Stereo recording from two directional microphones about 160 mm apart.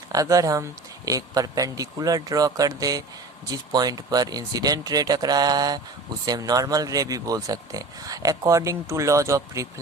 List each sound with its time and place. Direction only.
0.1 s speech: 20° right (ahead or behind)